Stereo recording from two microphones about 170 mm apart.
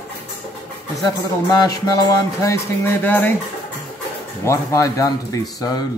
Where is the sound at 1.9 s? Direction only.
20° left (ahead or behind).